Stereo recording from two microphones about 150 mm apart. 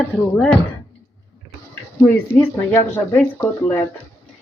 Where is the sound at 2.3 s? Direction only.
15° left (ahead or behind).